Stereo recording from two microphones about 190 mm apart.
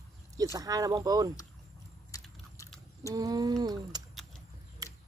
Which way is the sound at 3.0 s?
20° right (ahead or behind).